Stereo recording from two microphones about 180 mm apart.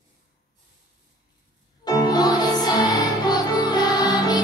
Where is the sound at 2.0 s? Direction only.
20° left (ahead or behind).